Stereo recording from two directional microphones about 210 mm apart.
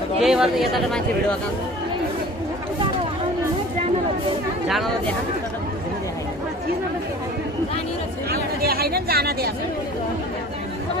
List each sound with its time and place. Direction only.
0.2 s speech: centre (ahead or behind)
4.6 s speech: centre (ahead or behind)
8.3 s chatter: 45° right (ahead or behind)